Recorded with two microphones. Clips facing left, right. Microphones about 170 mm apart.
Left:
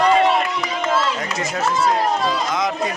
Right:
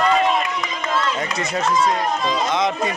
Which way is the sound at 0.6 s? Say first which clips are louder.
Left 3 dB; 5° left (ahead or behind).